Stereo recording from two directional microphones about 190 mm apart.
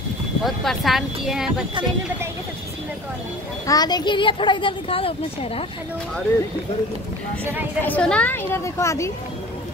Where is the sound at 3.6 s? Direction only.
20° left (ahead or behind).